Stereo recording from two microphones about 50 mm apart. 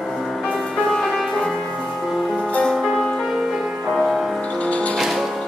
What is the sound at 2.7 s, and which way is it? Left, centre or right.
Music, centre.